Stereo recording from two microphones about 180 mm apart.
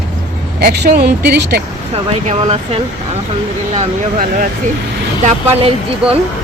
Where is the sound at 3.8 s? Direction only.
50° right (ahead or behind).